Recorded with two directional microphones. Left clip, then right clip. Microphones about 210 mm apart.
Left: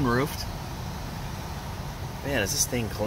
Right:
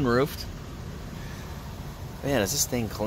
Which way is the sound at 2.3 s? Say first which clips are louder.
Right 1 dB; 35° right (ahead or behind).